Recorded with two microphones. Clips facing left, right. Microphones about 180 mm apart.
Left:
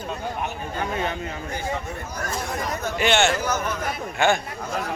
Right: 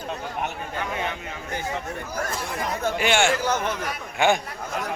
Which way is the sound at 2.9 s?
10° right (ahead or behind).